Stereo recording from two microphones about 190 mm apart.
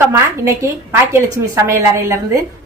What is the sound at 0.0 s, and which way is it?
A woman's voice, 15° right (ahead or behind).